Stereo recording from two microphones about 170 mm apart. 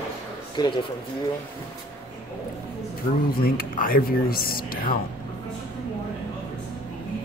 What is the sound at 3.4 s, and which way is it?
Speech, 55° left (ahead or behind).